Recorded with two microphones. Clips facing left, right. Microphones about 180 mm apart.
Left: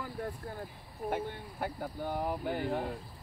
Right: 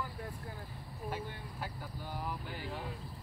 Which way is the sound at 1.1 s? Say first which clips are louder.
Left 7 dB; 55° left (ahead or behind).